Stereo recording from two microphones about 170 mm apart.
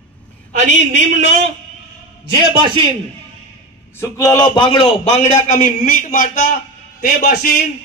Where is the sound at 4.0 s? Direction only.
20° left (ahead or behind).